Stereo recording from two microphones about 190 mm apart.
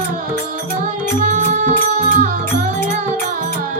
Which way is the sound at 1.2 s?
40° right (ahead or behind).